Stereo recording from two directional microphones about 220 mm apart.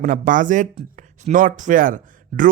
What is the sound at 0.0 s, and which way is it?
Speech, 35° right (ahead or behind).